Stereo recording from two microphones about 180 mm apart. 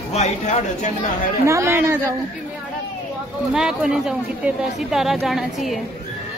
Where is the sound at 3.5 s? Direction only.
5° right (ahead or behind).